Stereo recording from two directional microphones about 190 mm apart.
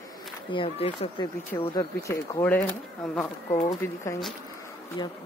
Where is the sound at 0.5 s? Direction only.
30° left (ahead or behind).